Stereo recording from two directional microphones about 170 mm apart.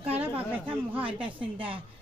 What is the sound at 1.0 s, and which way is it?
Speech, 30° right (ahead or behind).